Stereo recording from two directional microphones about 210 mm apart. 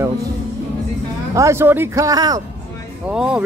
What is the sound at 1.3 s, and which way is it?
Speech, 15° right (ahead or behind).